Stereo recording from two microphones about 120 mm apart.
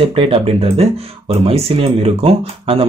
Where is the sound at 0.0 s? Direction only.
50° right (ahead or behind).